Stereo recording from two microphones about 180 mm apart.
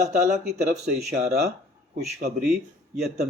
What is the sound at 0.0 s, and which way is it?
A man's voice, 40° right (ahead or behind).